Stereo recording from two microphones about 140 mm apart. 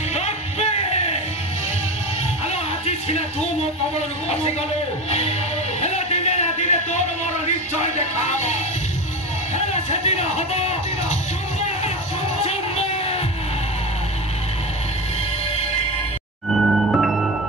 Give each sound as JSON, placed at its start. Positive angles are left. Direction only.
{"t": 0.1, "sound": "music", "side_deg": 50}
{"t": 5.8, "sound": "music", "side_deg": 50}
{"t": 7.8, "sound": "speech", "side_deg": 55}
{"t": 9.7, "sound": "speech", "side_deg": 50}
{"t": 12.4, "sound": "music", "side_deg": 45}
{"t": 16.4, "sound": "music", "side_deg": 0}